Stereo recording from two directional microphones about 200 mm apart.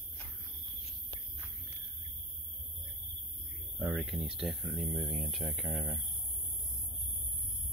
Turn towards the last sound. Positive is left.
turn(degrees=0)  # may be behind; listen again after turning